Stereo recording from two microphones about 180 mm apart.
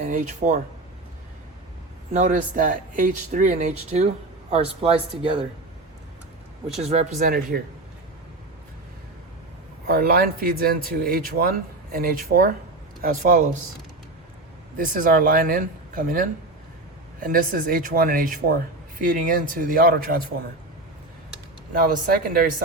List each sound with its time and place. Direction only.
0.0 s speech: 45° right (ahead or behind)
2.1 s speech: 45° right (ahead or behind)
6.8 s speech: 40° right (ahead or behind)
9.8 s speech: 55° right (ahead or behind)
14.8 s speech: 50° right (ahead or behind)
21.7 s speech: 55° right (ahead or behind)